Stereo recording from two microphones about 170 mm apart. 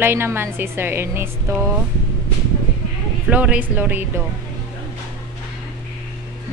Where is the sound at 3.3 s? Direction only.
10° right (ahead or behind).